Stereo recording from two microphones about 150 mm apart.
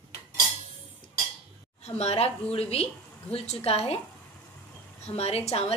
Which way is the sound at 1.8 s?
45° left (ahead or behind).